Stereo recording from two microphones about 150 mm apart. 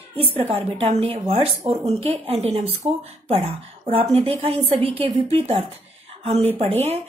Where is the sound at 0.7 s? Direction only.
40° right (ahead or behind).